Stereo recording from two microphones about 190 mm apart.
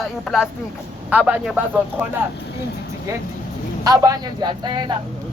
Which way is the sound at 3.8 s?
20° right (ahead or behind).